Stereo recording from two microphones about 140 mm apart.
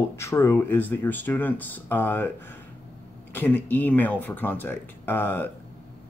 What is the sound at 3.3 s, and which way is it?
Speech, 15° left (ahead or behind).